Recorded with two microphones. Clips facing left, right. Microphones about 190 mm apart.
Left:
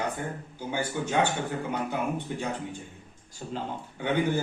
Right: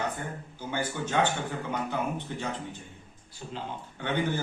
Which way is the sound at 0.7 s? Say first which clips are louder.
Left 1 dB; 10° left (ahead or behind).